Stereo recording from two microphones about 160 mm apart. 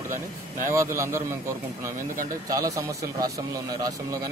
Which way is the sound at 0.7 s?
15° right (ahead or behind).